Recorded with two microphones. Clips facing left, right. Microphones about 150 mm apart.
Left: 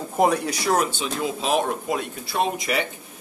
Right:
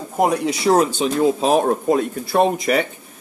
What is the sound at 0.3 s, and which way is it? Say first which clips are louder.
Speech: right 5 dB; 25° right (ahead or behind).